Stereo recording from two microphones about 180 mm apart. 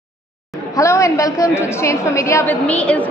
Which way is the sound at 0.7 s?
15° left (ahead or behind).